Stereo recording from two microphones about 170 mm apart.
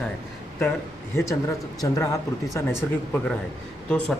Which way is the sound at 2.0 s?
20° left (ahead or behind).